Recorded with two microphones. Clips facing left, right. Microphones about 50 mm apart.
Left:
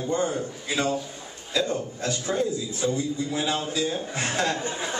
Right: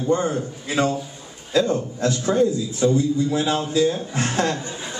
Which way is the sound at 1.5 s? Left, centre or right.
Right.